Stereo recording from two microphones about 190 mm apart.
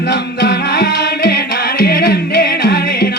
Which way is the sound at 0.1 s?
60° left (ahead or behind).